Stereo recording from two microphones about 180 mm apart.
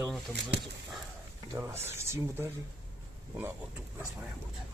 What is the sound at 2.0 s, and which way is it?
Speech, 15° right (ahead or behind).